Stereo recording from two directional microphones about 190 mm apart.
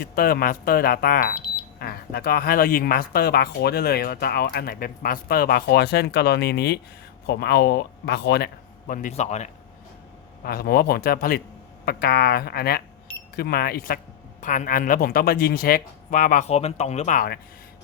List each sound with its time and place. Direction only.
0.0 s a man's voice: 50° left (ahead or behind)
8.9 s speech: 40° left (ahead or behind)
10.4 s a man's voice: 50° left (ahead or behind)
16.5 s speech: 35° left (ahead or behind); by 17.4 s 50° left (ahead or behind)